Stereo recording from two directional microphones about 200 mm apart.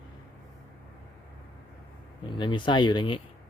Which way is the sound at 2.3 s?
25° left (ahead or behind).